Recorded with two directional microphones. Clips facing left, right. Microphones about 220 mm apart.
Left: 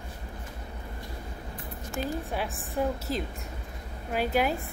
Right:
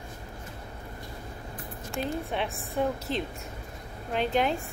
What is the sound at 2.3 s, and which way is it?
A woman's voice, centre (ahead or behind).